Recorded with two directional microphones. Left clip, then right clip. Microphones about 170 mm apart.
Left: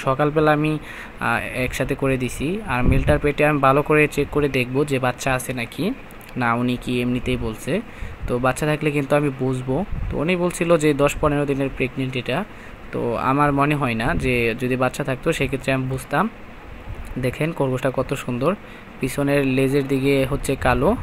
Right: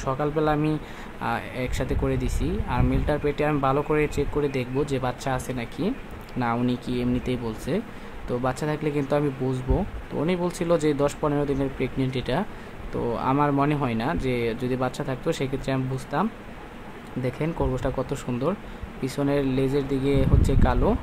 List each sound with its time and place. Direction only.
0.0 s speech: 20° left (ahead or behind); by 12.4 s centre (ahead or behind)
13.0 s speech: 15° left (ahead or behind)